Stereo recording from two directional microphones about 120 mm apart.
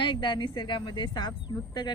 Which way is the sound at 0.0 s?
45° left (ahead or behind).